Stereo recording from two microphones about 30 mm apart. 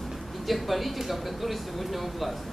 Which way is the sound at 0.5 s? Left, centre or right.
Centre.